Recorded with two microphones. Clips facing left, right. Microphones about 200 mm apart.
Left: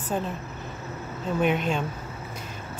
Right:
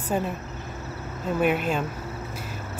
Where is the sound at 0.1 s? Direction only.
5° right (ahead or behind).